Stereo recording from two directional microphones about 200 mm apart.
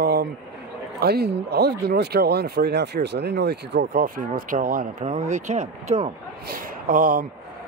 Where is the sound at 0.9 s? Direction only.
50° right (ahead or behind); by 6.1 s 30° right (ahead or behind).